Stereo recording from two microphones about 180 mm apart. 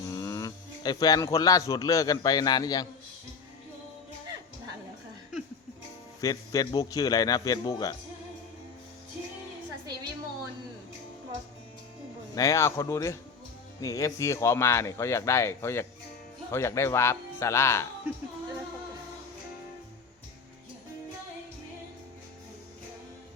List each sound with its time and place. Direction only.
0.0 s speech: 20° left (ahead or behind)
6.1 s a man's voice: 20° left (ahead or behind)
12.3 s speech: 20° left (ahead or behind)